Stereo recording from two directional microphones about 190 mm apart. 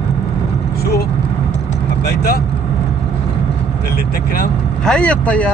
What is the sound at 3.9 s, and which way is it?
Vehicle, 55° left (ahead or behind).